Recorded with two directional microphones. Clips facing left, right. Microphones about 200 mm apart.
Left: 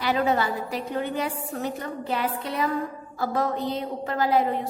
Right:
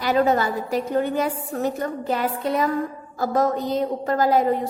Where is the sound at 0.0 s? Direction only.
45° right (ahead or behind).